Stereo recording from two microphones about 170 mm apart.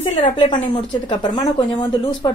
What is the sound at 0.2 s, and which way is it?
Speech, 30° left (ahead or behind).